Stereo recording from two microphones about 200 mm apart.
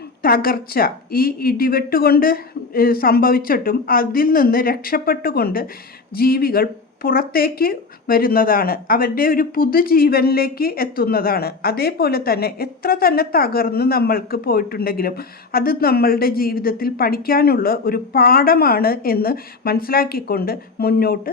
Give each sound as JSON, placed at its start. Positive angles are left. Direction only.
{"t": 0.2, "sound": "speech", "side_deg": 45}